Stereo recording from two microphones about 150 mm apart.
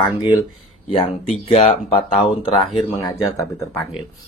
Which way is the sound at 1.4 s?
40° left (ahead or behind).